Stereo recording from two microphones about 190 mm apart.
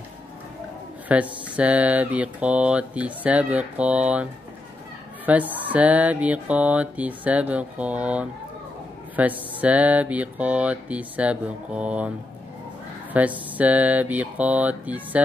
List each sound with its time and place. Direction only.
1.0 s speech: 5° right (ahead or behind)
13.1 s speech: 10° right (ahead or behind)